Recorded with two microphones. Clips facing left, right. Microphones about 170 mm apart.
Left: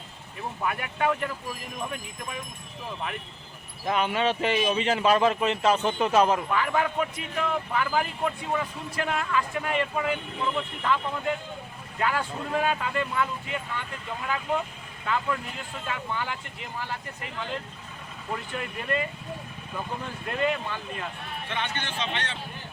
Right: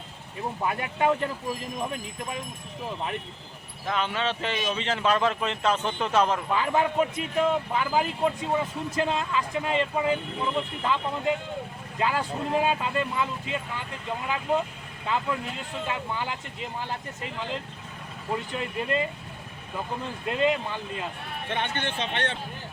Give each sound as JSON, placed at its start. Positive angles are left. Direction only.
{"t": 0.6, "sound": "speech", "side_deg": -25}
{"t": 3.8, "sound": "speech", "side_deg": 15}
{"t": 6.5, "sound": "speech", "side_deg": -25}
{"t": 15.0, "sound": "speech", "side_deg": -20}
{"t": 18.5, "sound": "speech", "side_deg": -25}
{"t": 20.2, "sound": "speech", "side_deg": -20}
{"t": 21.5, "sound": "a man's voice", "side_deg": -50}